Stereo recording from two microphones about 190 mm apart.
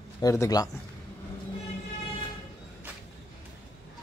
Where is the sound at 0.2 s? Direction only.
15° left (ahead or behind).